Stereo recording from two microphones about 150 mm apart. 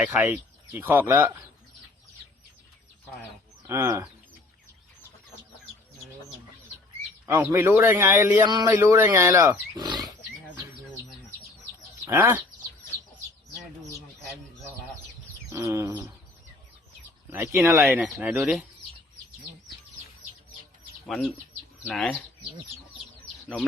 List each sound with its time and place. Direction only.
0.0 s speech: 10° right (ahead or behind)
3.7 s speech: 20° right (ahead or behind)
7.3 s speech: 15° right (ahead or behind)
12.0 s speech: 15° right (ahead or behind)
15.4 s bird: 20° right (ahead or behind)
17.3 s speech: 15° right (ahead or behind)
21.1 s speech: centre (ahead or behind)